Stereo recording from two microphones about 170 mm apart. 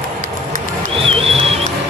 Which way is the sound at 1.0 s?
35° right (ahead or behind).